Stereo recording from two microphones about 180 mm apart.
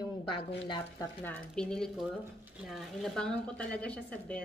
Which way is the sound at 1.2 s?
5° left (ahead or behind).